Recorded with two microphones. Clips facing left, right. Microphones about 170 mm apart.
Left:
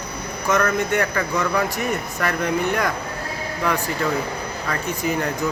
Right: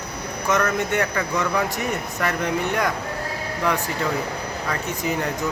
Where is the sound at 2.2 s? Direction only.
20° right (ahead or behind).